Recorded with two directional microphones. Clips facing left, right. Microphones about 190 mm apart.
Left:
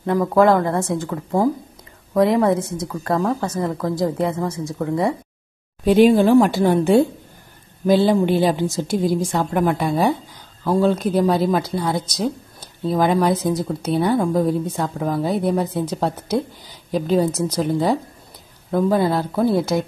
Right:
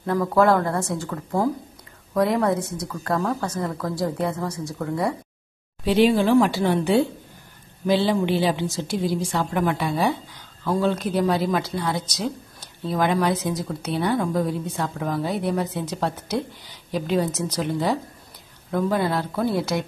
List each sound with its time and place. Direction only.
0.0 s a woman's voice: 20° left (ahead or behind)
5.9 s a woman's voice: 50° left (ahead or behind)